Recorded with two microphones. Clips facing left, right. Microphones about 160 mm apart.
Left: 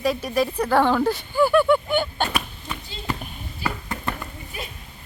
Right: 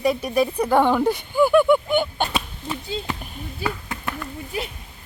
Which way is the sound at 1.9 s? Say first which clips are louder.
Right 2 dB; 15° right (ahead or behind).